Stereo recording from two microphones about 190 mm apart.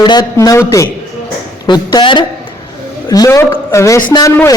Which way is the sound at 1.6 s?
25° left (ahead or behind).